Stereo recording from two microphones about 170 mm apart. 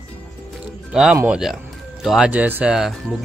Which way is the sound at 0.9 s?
5° right (ahead or behind).